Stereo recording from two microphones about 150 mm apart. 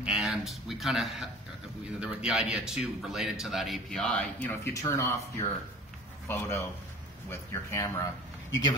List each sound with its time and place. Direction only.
0.0 s a man's voice: 5° right (ahead or behind); by 8.1 s 20° left (ahead or behind)